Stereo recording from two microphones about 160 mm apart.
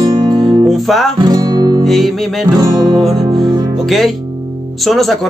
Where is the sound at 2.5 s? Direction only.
25° right (ahead or behind).